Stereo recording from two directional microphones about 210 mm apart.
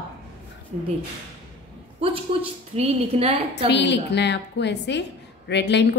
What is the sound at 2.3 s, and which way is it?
A woman's voice, 25° right (ahead or behind).